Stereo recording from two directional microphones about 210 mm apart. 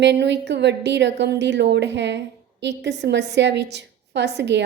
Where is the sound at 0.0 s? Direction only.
55° right (ahead or behind).